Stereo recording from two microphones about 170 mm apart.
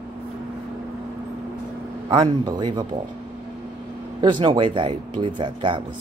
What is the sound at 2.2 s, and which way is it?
Speech, 25° right (ahead or behind).